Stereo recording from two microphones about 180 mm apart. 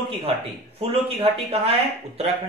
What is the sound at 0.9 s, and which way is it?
A man's voice, 30° right (ahead or behind).